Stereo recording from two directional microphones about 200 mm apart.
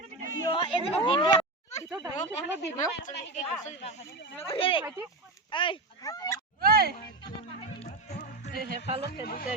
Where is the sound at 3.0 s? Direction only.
35° left (ahead or behind); by 6.4 s 15° left (ahead or behind).